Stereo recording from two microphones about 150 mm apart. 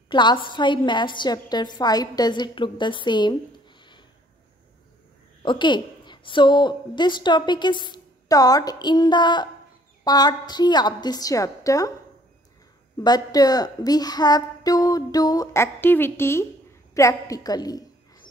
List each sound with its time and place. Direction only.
0.1 s a woman's voice: 30° left (ahead or behind)
5.4 s a woman's voice: 30° left (ahead or behind)
12.9 s a woman's voice: 25° left (ahead or behind)